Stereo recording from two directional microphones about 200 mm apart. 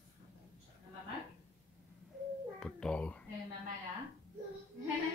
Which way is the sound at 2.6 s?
5° left (ahead or behind).